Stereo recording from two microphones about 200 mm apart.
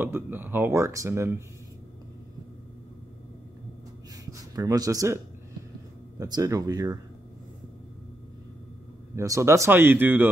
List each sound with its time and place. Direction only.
0.0 s speech: 10° right (ahead or behind)
4.3 s speech: 15° right (ahead or behind)
9.1 s speech: 15° right (ahead or behind)